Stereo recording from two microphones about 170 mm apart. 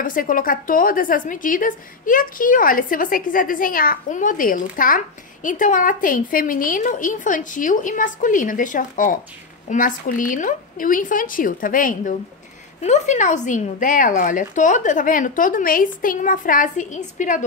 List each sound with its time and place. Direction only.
0.0 s a woman's voice: 55° left (ahead or behind)